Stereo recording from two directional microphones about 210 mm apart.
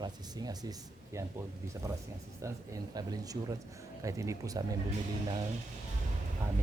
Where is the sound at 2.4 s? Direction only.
15° right (ahead or behind).